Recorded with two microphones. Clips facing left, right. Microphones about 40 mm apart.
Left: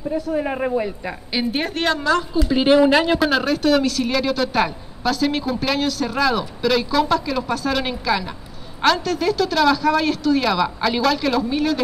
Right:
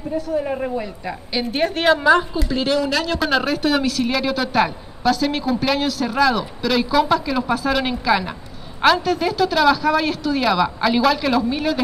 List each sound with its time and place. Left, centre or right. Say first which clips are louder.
0.3 s a woman's voice: left 1 dB; left; by 2.2 s centre
2.5 s speech: left 6 dB; left
3.2 s speech: left 1 dB; centre